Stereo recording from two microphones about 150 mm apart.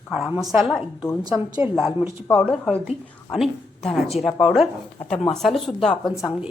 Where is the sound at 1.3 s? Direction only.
10° right (ahead or behind).